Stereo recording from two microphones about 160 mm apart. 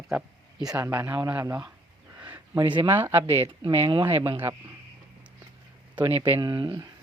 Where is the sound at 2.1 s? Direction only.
10° right (ahead or behind).